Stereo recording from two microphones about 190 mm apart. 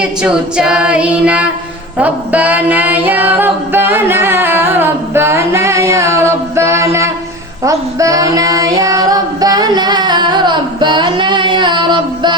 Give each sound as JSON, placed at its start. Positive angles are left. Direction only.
{"t": 0.0, "sound": "a capella", "side_deg": -5}
{"t": 2.0, "sound": "a sound", "side_deg": -10}
{"t": 7.6, "sound": "child singing", "side_deg": -15}